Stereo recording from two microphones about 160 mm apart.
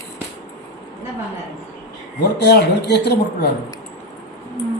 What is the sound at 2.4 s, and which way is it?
Speech, 90° left.